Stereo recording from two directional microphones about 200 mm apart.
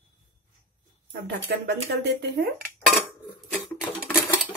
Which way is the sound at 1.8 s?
60° right (ahead or behind).